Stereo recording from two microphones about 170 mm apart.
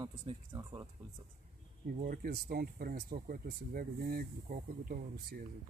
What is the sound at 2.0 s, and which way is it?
Speech, 60° right (ahead or behind).